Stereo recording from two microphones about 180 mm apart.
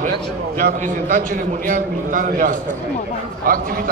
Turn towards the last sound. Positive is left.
turn(degrees=-50)  # may be behind; listen again after turning